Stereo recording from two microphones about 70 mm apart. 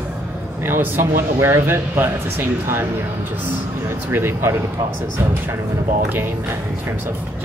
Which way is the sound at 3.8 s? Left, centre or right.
Right.